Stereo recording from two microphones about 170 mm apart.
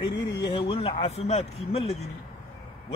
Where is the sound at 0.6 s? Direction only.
35° left (ahead or behind).